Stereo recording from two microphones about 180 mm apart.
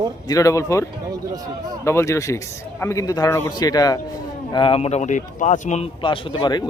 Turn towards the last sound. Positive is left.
turn(degrees=25)  # may be behind; listen again after turning